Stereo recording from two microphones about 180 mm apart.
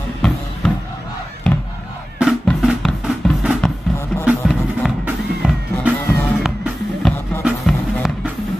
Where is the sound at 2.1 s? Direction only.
Centre (ahead or behind).